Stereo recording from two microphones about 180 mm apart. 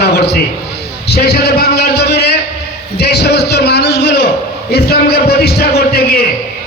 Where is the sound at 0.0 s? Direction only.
65° left (ahead or behind).